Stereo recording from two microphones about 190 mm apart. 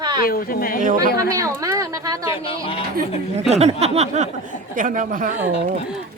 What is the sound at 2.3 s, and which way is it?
Speech, 30° left (ahead or behind).